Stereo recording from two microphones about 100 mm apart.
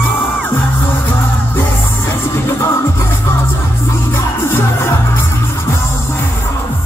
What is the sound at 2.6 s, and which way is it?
Music, 25° left (ahead or behind).